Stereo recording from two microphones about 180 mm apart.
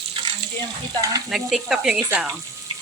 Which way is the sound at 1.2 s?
Centre (ahead or behind).